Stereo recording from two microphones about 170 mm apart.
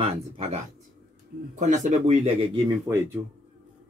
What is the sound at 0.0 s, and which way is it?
Speech, 40° right (ahead or behind).